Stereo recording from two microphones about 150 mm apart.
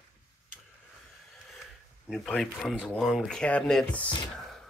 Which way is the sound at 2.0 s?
Centre (ahead or behind).